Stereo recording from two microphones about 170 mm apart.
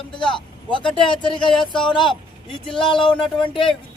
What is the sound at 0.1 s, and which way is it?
Speech, 30° left (ahead or behind).